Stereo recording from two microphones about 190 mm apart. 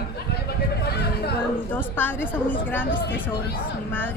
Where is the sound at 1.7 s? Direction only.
10° left (ahead or behind).